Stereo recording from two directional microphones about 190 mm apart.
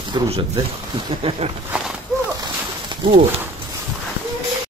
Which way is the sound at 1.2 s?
30° right (ahead or behind).